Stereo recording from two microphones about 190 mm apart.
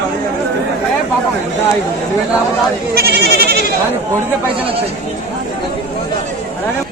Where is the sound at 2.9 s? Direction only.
60° right (ahead or behind).